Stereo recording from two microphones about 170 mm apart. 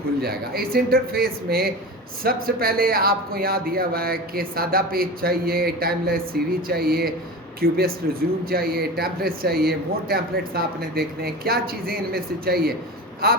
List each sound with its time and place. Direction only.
0.2 s speech: 60° right (ahead or behind)